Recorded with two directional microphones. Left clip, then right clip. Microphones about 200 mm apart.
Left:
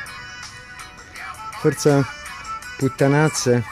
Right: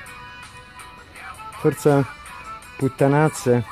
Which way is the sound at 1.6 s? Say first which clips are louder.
Even; centre (ahead or behind).